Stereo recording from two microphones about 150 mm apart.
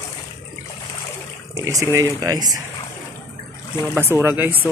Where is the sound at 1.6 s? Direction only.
20° right (ahead or behind).